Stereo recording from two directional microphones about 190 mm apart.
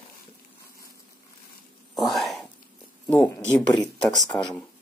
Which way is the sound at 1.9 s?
Centre (ahead or behind).